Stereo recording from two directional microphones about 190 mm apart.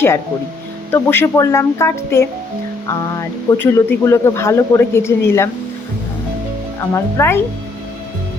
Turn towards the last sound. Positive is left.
turn(degrees=15)  # may be behind; listen again after turning